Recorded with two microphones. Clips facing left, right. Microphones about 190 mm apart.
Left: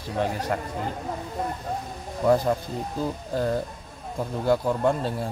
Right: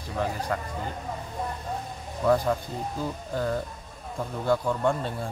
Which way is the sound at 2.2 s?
25° left (ahead or behind).